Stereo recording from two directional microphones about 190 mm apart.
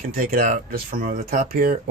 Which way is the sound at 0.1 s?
50° right (ahead or behind).